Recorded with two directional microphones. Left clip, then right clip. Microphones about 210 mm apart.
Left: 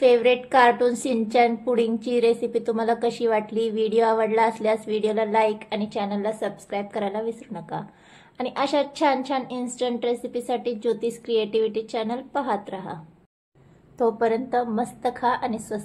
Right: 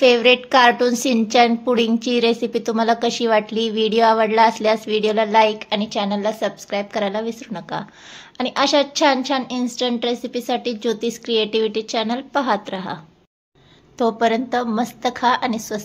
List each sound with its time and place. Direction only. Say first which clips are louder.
0.0 s a woman's voice: right 4 dB; 20° right (ahead or behind)